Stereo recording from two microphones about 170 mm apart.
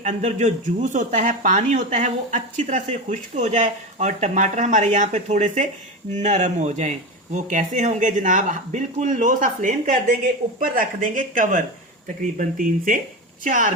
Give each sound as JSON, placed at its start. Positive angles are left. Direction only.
{"t": 0.0, "sound": "speech", "side_deg": -40}